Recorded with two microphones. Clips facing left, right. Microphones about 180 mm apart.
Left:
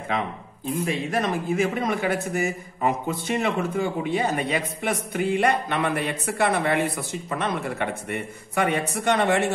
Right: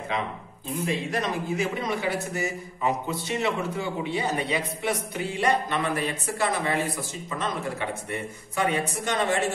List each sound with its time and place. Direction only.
1.1 s a man's voice: 50° left (ahead or behind)